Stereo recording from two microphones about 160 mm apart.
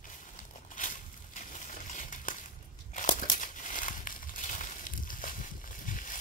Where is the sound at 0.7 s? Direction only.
55° left (ahead or behind).